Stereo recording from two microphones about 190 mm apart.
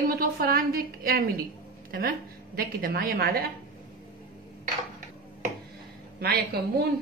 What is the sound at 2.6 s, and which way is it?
Speech, 50° right (ahead or behind).